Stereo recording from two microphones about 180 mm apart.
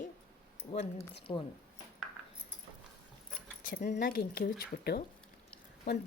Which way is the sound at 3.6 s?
60° left (ahead or behind).